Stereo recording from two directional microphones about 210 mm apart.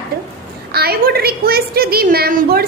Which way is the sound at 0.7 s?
50° right (ahead or behind).